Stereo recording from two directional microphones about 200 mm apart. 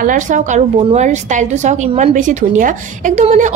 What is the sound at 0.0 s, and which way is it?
A woman's voice, 40° right (ahead or behind).